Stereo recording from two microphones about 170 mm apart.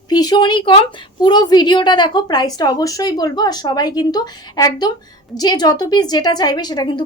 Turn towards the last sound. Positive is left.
turn(degrees=25)  # may be behind; listen again after turning